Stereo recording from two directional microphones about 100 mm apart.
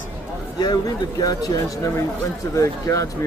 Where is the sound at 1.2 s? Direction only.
40° left (ahead or behind).